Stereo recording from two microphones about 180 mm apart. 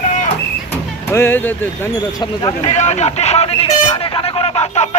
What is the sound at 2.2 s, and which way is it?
Speech, 25° left (ahead or behind).